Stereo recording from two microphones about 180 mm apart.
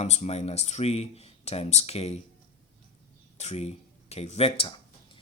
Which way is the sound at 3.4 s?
35° left (ahead or behind).